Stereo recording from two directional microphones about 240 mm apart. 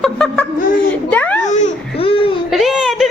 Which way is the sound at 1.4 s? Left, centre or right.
Left.